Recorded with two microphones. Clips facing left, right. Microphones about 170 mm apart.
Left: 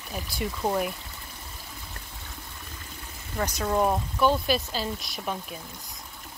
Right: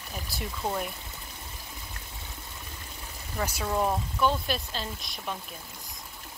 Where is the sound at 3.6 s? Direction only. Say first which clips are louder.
Left 4 dB; 15° left (ahead or behind).